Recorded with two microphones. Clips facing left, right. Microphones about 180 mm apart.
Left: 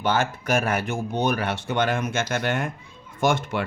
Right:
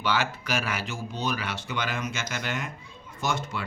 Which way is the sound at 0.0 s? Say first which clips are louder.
Left 4 dB; 50° left (ahead or behind).